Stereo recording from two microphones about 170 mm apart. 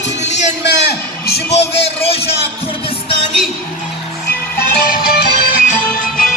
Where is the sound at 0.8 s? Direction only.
70° left (ahead or behind).